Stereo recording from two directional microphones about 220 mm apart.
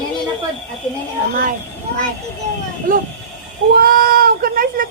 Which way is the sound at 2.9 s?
40° right (ahead or behind).